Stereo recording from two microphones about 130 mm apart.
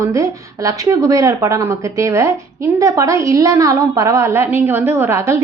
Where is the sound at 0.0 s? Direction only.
25° right (ahead or behind).